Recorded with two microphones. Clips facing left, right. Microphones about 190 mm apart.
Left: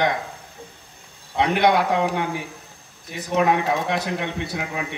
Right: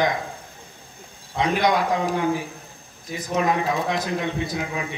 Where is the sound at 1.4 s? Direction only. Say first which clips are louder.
Left 2 dB; 65° left (ahead or behind).